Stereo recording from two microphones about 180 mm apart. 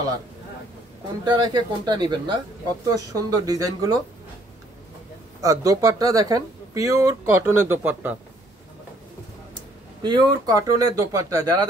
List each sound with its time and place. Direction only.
1.2 s speech: 25° right (ahead or behind)
5.4 s speech: 20° right (ahead or behind)
10.0 s speech: 25° right (ahead or behind)